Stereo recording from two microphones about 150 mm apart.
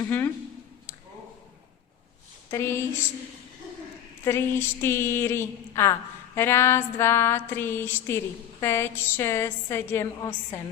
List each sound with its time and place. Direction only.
2.5 s speech: 15° left (ahead or behind)
4.2 s speech: 15° left (ahead or behind)